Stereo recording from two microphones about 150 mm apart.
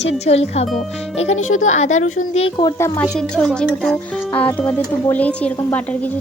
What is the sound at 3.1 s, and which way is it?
A woman's voice, 5° left (ahead or behind).